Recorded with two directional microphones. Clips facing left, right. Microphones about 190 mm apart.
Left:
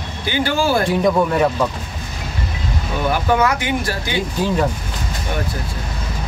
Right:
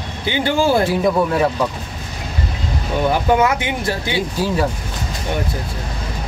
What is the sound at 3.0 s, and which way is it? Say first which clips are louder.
Speech: right 1 dB; 25° right (ahead or behind).